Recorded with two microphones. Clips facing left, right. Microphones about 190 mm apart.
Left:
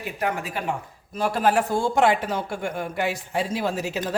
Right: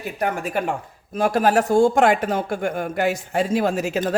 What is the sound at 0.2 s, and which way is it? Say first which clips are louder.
Speech: right 4 dB; 50° right (ahead or behind).